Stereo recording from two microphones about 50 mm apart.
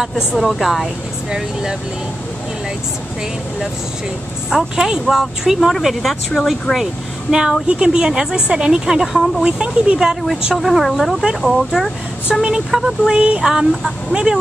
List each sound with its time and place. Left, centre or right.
0.4 s speech: centre
1.3 s a woman's voice: centre
4.5 s a woman's voice: centre
9.4 s a woman's voice: centre
10.2 s speech: centre
12.4 s a sound: centre
12.7 s a woman's voice: centre
13.1 s a sound: centre
13.5 s a woman's voice: centre